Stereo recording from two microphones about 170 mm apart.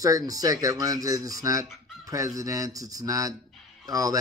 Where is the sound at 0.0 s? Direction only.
20° right (ahead or behind).